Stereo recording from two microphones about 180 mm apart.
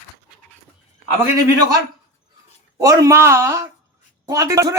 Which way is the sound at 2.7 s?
20° right (ahead or behind).